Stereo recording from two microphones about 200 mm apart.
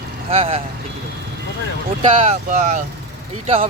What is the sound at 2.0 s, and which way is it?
Speech, 30° right (ahead or behind).